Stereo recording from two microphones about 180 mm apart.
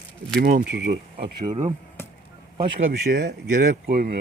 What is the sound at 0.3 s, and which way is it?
Speech, 65° right (ahead or behind).